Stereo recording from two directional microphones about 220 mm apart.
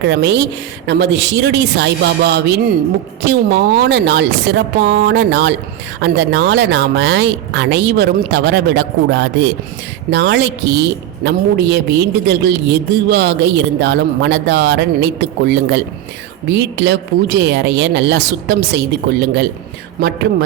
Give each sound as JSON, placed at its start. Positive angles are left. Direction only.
{"t": 0.0, "sound": "a woman's voice", "side_deg": -50}